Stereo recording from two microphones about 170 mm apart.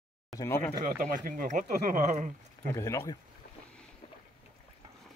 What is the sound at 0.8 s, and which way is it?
Speech, 50° right (ahead or behind).